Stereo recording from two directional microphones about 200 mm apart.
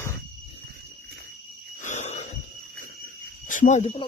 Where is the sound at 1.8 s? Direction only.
35° left (ahead or behind).